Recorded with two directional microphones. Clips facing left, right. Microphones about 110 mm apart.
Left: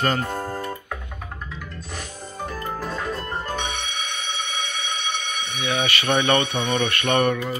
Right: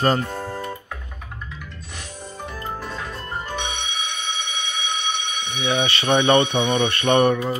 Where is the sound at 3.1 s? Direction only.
45° left (ahead or behind).